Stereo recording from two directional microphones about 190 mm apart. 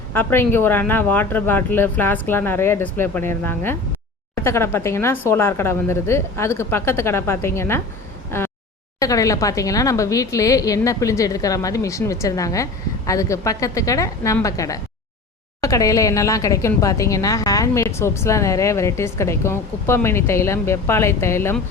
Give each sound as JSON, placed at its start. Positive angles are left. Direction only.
{"t": 0.1, "sound": "speech", "side_deg": 10}
{"t": 8.3, "sound": "a sound", "side_deg": 10}
{"t": 9.0, "sound": "speech", "side_deg": 15}